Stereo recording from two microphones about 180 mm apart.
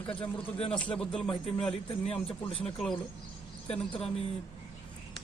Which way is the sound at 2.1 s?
35° left (ahead or behind).